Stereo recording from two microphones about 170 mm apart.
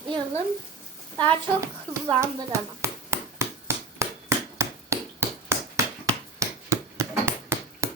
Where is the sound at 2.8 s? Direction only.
15° right (ahead or behind).